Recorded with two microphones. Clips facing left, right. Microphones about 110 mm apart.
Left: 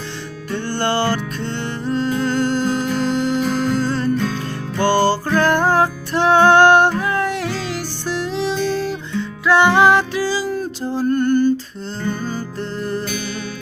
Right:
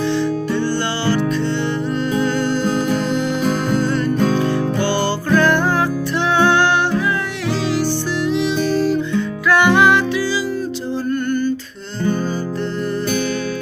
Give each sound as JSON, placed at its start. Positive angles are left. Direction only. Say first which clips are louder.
{"t": 1.9, "sound": "music", "louder": "left 3 dB", "side_deg": 40}
{"t": 3.4, "sound": "music", "louder": "right 1 dB", "side_deg": -45}
{"t": 3.8, "sound": "music", "louder": "right 2 dB", "side_deg": 35}
{"t": 9.5, "sound": "music", "louder": "left 1 dB", "side_deg": 30}
{"t": 11.1, "sound": "a sound", "louder": "left 4 dB", "side_deg": 35}